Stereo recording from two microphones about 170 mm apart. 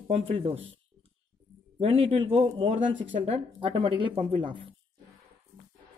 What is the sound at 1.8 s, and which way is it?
Speech, 35° right (ahead or behind).